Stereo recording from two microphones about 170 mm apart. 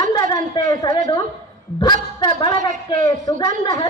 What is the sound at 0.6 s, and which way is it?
Speech, 25° left (ahead or behind).